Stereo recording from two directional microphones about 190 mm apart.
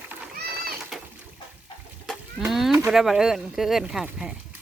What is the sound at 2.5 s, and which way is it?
Speech, centre (ahead or behind).